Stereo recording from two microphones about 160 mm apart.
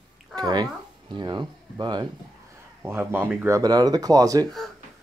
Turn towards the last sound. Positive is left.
turn(degrees=-20)  # may be behind; listen again after turning